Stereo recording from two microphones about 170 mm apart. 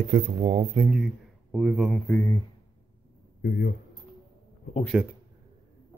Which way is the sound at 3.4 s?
70° left (ahead or behind).